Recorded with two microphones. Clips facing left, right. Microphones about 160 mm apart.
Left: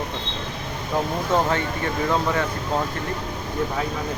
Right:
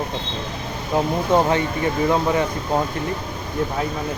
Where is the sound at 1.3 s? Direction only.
15° right (ahead or behind).